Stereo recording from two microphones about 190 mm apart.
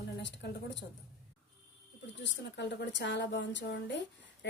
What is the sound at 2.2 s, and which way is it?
A woman's voice, 65° left (ahead or behind).